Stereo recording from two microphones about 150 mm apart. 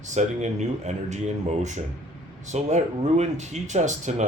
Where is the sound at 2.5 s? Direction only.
50° right (ahead or behind).